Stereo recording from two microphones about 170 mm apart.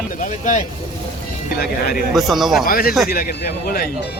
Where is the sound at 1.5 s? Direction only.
60° left (ahead or behind).